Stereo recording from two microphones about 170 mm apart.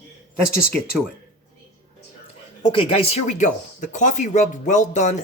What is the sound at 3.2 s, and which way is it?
Speech, 50° left (ahead or behind).